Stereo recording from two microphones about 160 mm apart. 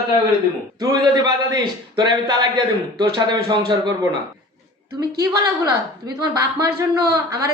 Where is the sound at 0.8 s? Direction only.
25° right (ahead or behind).